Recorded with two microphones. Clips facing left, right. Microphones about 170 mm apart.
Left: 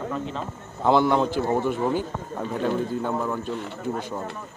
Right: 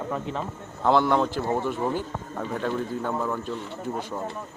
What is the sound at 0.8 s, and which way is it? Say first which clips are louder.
Speech: left 1 dB; 5° left (ahead or behind).